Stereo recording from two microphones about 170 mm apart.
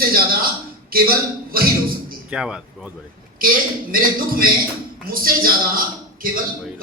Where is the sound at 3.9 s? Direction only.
60° right (ahead or behind).